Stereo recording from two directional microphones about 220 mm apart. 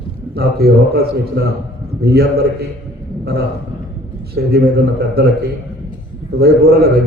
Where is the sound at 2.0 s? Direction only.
45° right (ahead or behind).